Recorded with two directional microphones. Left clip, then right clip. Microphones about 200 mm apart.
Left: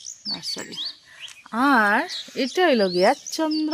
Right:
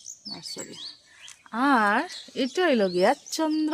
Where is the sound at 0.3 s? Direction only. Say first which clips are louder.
Left 8 dB; 35° left (ahead or behind).